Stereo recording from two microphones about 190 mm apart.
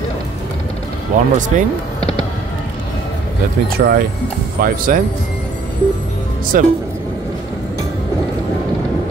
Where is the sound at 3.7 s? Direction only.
55° right (ahead or behind).